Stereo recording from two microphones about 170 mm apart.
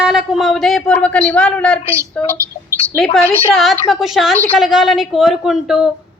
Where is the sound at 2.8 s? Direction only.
Centre (ahead or behind).